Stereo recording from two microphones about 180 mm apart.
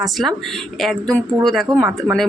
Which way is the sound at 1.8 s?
15° right (ahead or behind).